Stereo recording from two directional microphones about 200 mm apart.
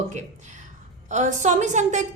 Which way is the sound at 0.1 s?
35° right (ahead or behind).